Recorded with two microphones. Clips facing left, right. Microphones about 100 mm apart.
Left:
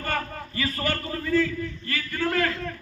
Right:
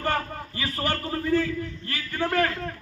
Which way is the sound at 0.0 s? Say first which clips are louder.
Right 2 dB; 20° right (ahead or behind).